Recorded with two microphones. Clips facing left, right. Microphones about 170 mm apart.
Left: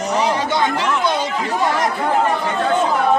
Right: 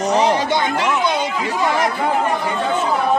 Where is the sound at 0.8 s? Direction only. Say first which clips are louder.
Even; 5° right (ahead or behind).